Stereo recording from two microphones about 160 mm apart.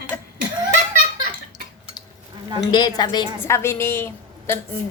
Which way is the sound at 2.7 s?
25° left (ahead or behind).